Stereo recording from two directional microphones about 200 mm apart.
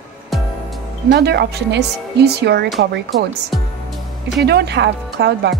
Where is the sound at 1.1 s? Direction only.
55° right (ahead or behind).